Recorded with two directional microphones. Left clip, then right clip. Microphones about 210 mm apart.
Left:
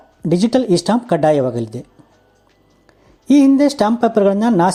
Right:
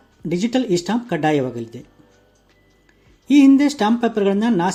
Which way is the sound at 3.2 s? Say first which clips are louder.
Left 2 dB; 30° left (ahead or behind).